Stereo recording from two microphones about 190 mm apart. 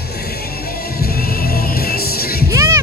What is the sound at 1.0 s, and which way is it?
Music, 55° left (ahead or behind).